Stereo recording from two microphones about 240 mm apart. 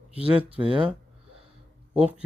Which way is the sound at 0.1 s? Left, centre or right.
Right.